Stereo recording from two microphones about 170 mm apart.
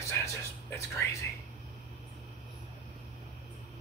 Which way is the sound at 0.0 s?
15° left (ahead or behind).